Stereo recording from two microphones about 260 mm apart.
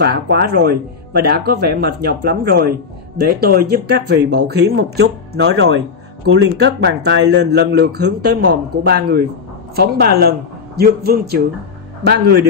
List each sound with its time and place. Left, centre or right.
0.0 s speech: right